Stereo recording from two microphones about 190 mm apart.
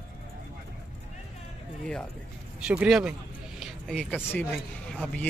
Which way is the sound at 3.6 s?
Centre (ahead or behind).